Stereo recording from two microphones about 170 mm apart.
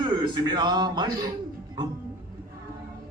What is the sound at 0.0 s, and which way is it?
A man's voice, 25° right (ahead or behind).